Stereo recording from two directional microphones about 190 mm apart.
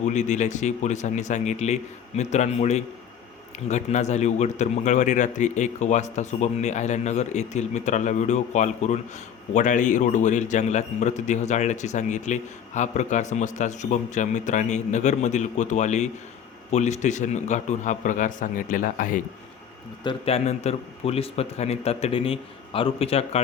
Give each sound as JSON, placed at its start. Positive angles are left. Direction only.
{"t": 0.0, "sound": "a man's voice", "side_deg": 40}
{"t": 20.1, "sound": "a man's voice", "side_deg": 30}